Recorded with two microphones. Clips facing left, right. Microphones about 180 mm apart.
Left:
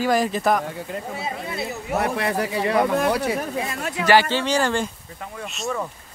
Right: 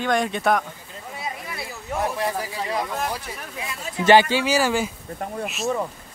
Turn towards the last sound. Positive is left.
turn(degrees=0)  # may be behind; listen again after turning